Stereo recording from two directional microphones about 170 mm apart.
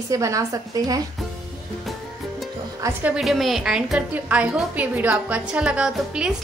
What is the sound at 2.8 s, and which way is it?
A woman's voice, 10° right (ahead or behind).